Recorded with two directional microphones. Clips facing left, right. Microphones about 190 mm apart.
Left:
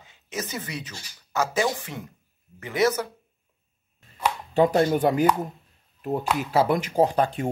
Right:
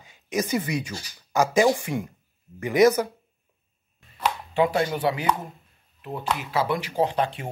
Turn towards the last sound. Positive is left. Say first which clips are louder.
# left 3 dB
turn(degrees=45)  # may be behind; listen again after turning